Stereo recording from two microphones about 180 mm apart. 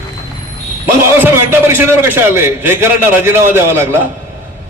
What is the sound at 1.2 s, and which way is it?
A man's voice, 10° right (ahead or behind).